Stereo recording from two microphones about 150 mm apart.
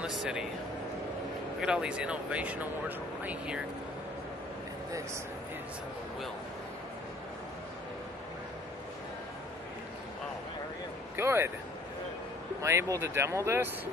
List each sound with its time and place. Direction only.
0.0 s a sound: 5° right (ahead or behind)
1.6 s speech: 5° right (ahead or behind)
11.1 s speech: 15° right (ahead or behind)
12.6 s speech: 20° right (ahead or behind)